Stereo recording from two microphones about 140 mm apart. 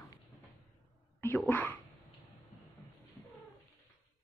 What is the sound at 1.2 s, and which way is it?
Whispering, 15° left (ahead or behind).